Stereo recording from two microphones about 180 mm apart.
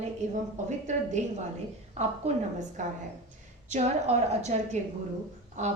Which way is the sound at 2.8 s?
45° right (ahead or behind).